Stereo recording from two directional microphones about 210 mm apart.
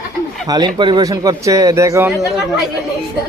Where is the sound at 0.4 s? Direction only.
20° right (ahead or behind).